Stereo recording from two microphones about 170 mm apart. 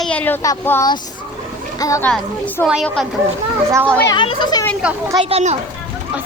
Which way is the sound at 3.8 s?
10° left (ahead or behind).